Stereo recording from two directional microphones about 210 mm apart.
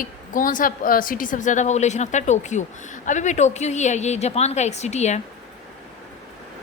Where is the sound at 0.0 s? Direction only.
40° left (ahead or behind).